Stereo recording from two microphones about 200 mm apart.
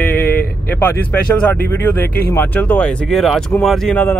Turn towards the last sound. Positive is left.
turn(degrees=5)  # may be behind; listen again after turning